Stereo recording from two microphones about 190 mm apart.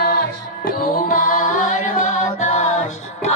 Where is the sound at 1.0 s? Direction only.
45° left (ahead or behind).